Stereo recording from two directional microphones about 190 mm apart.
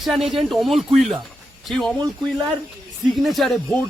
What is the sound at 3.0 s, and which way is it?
Speech, centre (ahead or behind).